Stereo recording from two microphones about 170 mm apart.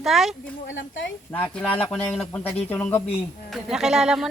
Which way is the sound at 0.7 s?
90° left.